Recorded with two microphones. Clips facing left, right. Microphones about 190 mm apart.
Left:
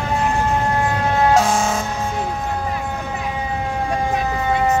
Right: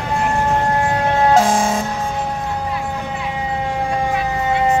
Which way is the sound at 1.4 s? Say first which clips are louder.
Right 2 dB; 30° right (ahead or behind).